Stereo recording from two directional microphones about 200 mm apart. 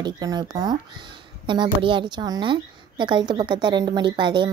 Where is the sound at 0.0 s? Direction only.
20° right (ahead or behind).